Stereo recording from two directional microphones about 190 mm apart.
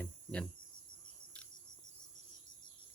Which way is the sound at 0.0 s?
5° left (ahead or behind).